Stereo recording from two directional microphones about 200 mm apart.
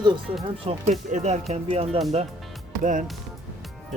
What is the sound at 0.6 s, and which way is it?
Speech, 30° right (ahead or behind).